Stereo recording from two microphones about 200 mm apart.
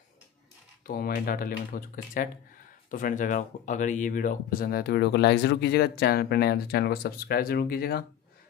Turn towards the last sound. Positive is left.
turn(degrees=50)  # may be behind; listen again after turning